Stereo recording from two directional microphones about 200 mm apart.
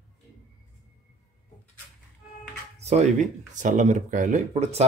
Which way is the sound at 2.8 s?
35° right (ahead or behind).